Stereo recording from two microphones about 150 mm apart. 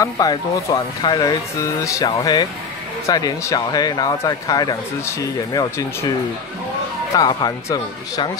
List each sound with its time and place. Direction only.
0.0 s speech: 25° left (ahead or behind)
7.2 s speech: 25° left (ahead or behind)